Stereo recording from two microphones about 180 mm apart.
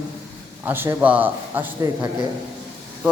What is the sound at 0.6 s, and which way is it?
A man's voice, 10° right (ahead or behind).